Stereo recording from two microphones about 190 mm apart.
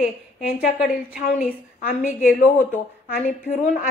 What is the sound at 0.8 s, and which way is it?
A woman's voice, 50° left (ahead or behind).